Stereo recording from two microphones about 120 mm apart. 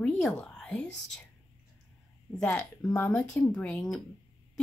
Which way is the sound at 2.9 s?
15° left (ahead or behind).